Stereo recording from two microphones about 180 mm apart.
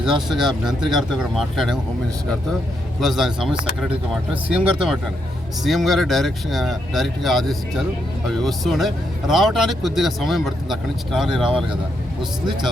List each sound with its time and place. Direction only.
0.0 s speech: centre (ahead or behind)
3.0 s speech: centre (ahead or behind)